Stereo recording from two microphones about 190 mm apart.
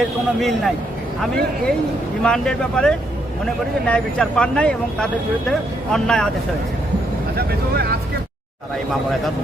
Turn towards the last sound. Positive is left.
turn(degrees=-55)  # may be behind; listen again after turning